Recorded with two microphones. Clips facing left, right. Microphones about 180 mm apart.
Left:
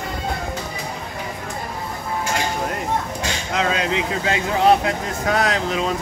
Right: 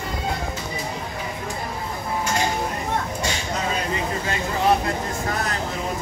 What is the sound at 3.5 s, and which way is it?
Speech, 90° left.